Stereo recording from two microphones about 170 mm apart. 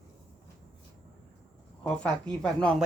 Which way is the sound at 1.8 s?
5° left (ahead or behind).